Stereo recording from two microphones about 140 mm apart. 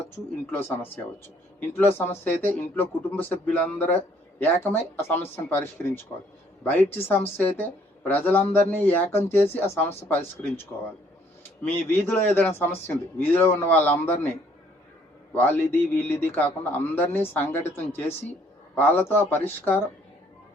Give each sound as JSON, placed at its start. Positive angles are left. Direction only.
{"t": 0.5, "sound": "a man's voice", "side_deg": 15}
{"t": 15.3, "sound": "a man's voice", "side_deg": 15}